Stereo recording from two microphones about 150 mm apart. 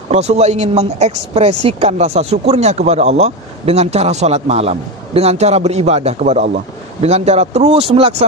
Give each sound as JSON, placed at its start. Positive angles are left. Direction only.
{"t": 0.1, "sound": "speech", "side_deg": -45}